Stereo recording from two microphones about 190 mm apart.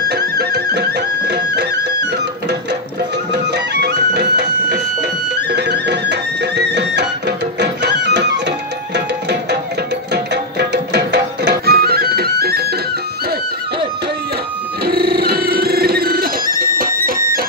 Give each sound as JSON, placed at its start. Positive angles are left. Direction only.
{"t": 0.1, "sound": "music", "side_deg": -60}
{"t": 3.5, "sound": "music", "side_deg": -60}
{"t": 10.1, "sound": "tabla", "side_deg": -60}
{"t": 11.6, "sound": "music", "side_deg": -55}
{"t": 14.9, "sound": "a sound", "side_deg": -55}
{"t": 16.5, "sound": "music", "side_deg": -50}